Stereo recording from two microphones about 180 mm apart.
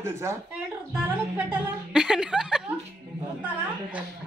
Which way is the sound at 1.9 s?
5° right (ahead or behind).